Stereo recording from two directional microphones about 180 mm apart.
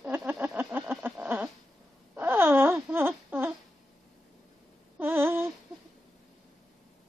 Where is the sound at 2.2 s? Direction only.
15° right (ahead or behind).